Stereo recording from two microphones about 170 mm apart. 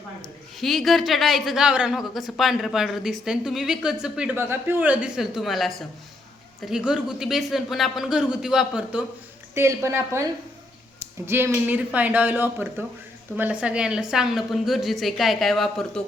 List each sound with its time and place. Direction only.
0.2 s a man's voice: centre (ahead or behind)